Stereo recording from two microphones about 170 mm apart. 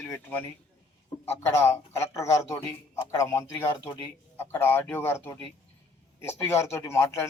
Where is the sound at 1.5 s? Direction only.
15° left (ahead or behind).